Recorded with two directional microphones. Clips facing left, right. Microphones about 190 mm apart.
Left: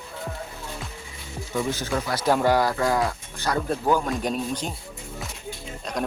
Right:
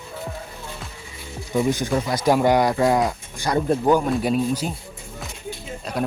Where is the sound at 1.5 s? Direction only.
15° right (ahead or behind).